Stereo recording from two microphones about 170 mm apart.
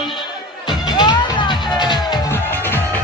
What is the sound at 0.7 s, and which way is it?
Music, 25° left (ahead or behind).